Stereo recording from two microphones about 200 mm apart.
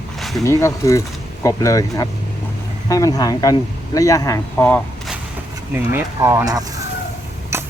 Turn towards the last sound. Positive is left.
turn(degrees=-10)  # may be behind; listen again after turning